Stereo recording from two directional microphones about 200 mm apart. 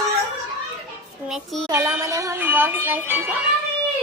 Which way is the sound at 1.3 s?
Centre (ahead or behind).